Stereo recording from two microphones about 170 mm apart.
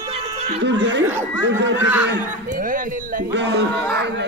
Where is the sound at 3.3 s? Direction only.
90° right.